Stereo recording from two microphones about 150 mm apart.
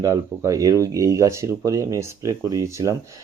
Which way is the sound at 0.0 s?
20° right (ahead or behind).